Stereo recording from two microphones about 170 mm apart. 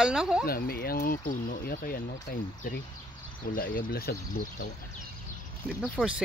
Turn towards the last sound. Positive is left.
turn(degrees=-5)  # may be behind; listen again after turning